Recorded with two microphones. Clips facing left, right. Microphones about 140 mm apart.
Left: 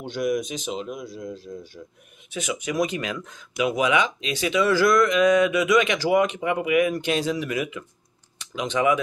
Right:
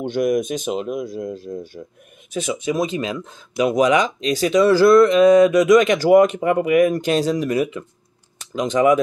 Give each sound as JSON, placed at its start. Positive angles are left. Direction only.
{"t": 0.0, "sound": "speech", "side_deg": -55}
{"t": 2.3, "sound": "speech", "side_deg": -30}